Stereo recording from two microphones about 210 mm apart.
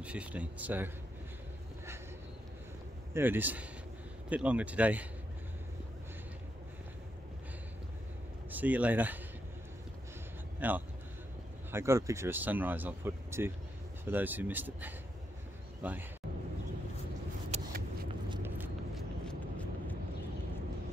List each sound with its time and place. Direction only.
0.0 s speech: 5° right (ahead or behind)
3.1 s speech: 10° right (ahead or behind)
8.5 s speech: 10° right (ahead or behind)
10.6 s speech: 10° right (ahead or behind)
17.5 s vehicle: 30° right (ahead or behind)
18.4 s a sound: 10° right (ahead or behind)
19.2 s vehicle: 5° left (ahead or behind)